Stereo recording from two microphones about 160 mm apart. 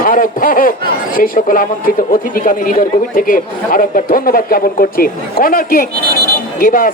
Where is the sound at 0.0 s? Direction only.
60° left (ahead or behind).